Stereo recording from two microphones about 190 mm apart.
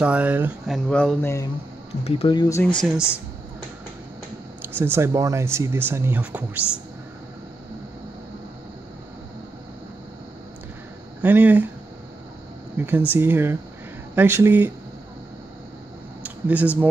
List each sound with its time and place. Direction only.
0.0 s speech: 5° right (ahead or behind)
0.7 s speech: 5° left (ahead or behind)
2.0 s speech: 30° left (ahead or behind)
2.8 s speech: 5° right (ahead or behind)
4.7 s speech: 10° right (ahead or behind)
11.2 s speech: 10° right (ahead or behind)
12.7 s speech: 10° right (ahead or behind)
16.2 s speech: 10° right (ahead or behind)